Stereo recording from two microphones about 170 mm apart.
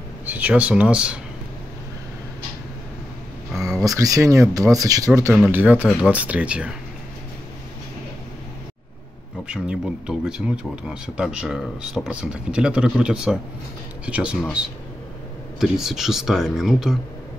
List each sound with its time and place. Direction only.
0.3 s speech: 10° right (ahead or behind)
3.7 s speech: 20° right (ahead or behind)
5.3 s speech: 10° right (ahead or behind)
9.5 s speech: 5° right (ahead or behind)